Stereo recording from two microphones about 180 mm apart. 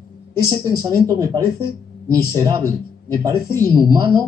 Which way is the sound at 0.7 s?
20° right (ahead or behind).